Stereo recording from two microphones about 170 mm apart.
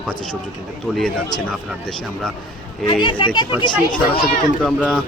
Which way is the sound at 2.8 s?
30° left (ahead or behind).